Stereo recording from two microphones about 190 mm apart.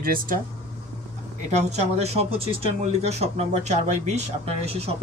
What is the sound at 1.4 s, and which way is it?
Speech, 35° right (ahead or behind).